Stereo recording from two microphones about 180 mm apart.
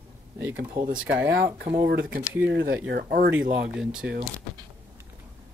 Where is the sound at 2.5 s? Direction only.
70° right (ahead or behind).